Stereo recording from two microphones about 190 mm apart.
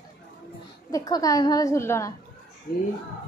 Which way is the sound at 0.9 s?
20° left (ahead or behind).